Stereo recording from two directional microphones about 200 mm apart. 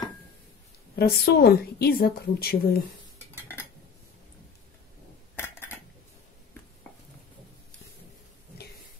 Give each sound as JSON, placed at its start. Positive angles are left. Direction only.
{"t": 0.9, "sound": "a woman's voice", "side_deg": 55}
{"t": 5.3, "sound": "cutlery", "side_deg": 10}